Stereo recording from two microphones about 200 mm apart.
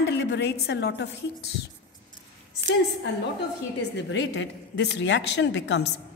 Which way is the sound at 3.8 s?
60° left (ahead or behind).